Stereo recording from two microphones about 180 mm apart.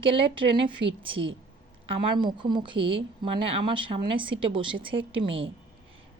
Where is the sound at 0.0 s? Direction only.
30° right (ahead or behind).